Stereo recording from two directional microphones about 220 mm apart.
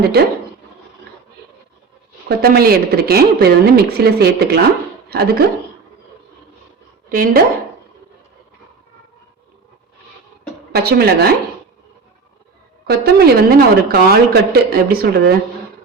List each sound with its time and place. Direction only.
0.1 s a woman's voice: 45° right (ahead or behind)
2.4 s a woman's voice: 45° right (ahead or behind)
7.1 s speech: 40° right (ahead or behind)
10.7 s a woman's voice: 45° right (ahead or behind)
12.9 s a woman's voice: 45° right (ahead or behind)